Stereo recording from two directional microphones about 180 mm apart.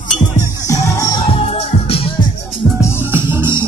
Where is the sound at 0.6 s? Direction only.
20° left (ahead or behind).